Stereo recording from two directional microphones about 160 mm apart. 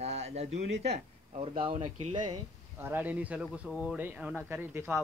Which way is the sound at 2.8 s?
10° right (ahead or behind).